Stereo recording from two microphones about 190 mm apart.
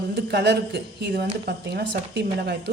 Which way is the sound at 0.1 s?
60° right (ahead or behind).